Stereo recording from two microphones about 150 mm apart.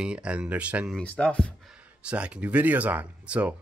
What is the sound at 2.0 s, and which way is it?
Speech, 5° right (ahead or behind).